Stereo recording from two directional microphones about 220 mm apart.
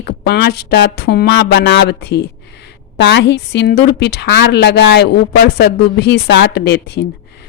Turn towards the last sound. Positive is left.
turn(degrees=50)  # may be behind; listen again after turning